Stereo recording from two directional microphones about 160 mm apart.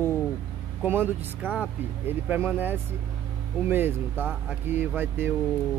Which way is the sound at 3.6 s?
15° right (ahead or behind).